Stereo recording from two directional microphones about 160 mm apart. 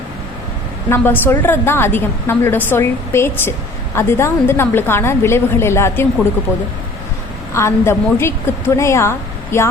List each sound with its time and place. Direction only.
0.9 s a woman's voice: 15° left (ahead or behind)
7.5 s a woman's voice: 15° left (ahead or behind)